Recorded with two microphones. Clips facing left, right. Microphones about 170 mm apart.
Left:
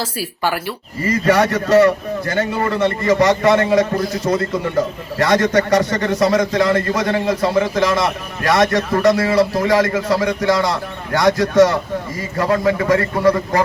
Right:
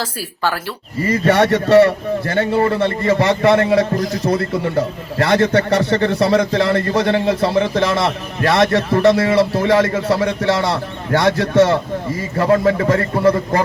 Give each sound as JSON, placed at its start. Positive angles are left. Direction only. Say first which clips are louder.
{"t": 0.0, "sound": "speech", "louder": "even", "side_deg": 15}
{"t": 1.2, "sound": "a man's voice", "louder": "right 1 dB", "side_deg": -30}
{"t": 5.2, "sound": "a man's voice", "louder": "even", "side_deg": -30}